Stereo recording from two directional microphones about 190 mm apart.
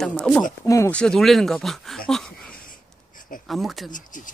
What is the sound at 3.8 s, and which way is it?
Speech, 45° left (ahead or behind).